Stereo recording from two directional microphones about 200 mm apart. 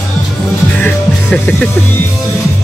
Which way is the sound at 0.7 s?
5° left (ahead or behind).